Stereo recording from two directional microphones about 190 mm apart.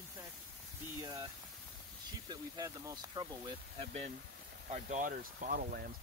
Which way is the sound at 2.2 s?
20° right (ahead or behind).